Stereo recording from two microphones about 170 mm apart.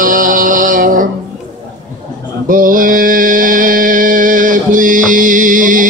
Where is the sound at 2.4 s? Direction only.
55° right (ahead or behind).